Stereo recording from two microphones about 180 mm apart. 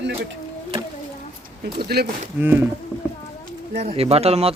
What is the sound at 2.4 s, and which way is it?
Speech, 10° right (ahead or behind).